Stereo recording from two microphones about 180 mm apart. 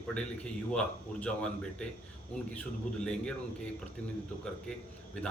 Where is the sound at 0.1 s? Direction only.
5° left (ahead or behind).